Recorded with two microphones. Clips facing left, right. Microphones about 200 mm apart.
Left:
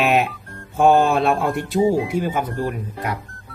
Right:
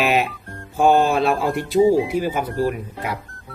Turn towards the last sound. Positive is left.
turn(degrees=0)  # may be behind; listen again after turning